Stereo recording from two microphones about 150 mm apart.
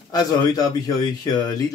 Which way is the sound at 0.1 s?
25° left (ahead or behind).